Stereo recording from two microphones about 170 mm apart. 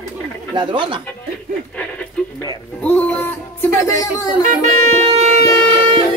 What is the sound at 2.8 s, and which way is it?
Music, 10° left (ahead or behind).